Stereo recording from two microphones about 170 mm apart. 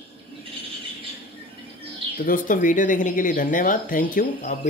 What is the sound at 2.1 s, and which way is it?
Speech, 55° left (ahead or behind).